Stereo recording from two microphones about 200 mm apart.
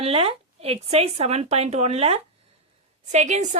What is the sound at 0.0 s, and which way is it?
Speech, 30° right (ahead or behind).